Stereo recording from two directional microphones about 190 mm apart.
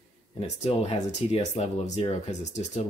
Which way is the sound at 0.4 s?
35° left (ahead or behind).